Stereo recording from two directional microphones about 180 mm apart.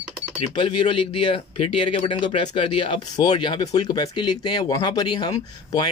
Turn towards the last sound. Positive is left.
turn(degrees=25)  # may be behind; listen again after turning